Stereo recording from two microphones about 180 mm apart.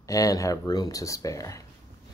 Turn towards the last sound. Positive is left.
turn(degrees=20)  # may be behind; listen again after turning